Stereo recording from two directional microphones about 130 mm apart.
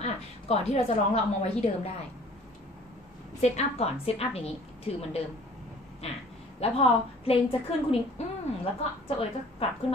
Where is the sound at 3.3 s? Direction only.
60° left (ahead or behind).